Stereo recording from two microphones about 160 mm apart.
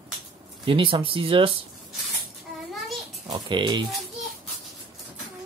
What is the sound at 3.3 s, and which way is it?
Speech, 30° right (ahead or behind).